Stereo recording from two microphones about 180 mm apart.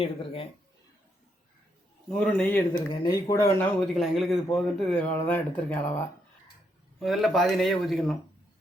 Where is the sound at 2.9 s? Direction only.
25° left (ahead or behind); by 8.1 s centre (ahead or behind).